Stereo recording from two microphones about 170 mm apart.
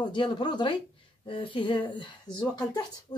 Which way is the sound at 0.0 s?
25° left (ahead or behind).